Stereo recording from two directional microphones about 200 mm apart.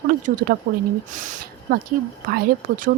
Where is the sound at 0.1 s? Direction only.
40° right (ahead or behind).